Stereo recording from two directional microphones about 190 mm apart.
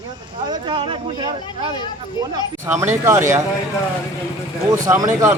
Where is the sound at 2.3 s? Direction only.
15° right (ahead or behind).